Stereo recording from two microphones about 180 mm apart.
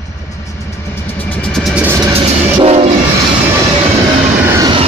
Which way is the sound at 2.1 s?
35° right (ahead or behind).